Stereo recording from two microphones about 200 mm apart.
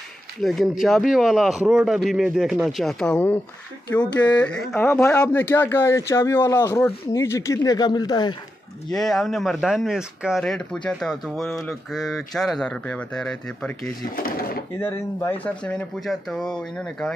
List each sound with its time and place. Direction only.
0.4 s speech: centre (ahead or behind)
4.0 s speech: 20° left (ahead or behind)
4.4 s speech: 5° left (ahead or behind); by 8.4 s 20° left (ahead or behind)
8.9 s speech: centre (ahead or behind)
14.1 s speech: 45° left (ahead or behind)
14.8 s speech: 10° left (ahead or behind)